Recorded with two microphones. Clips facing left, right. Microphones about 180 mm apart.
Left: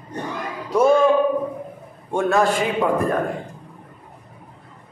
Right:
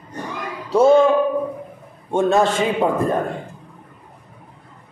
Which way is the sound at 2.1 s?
25° right (ahead or behind).